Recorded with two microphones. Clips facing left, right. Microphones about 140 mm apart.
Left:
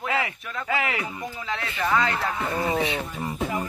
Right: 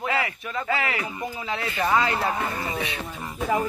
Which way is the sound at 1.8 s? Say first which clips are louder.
Right 1 dB; 15° right (ahead or behind).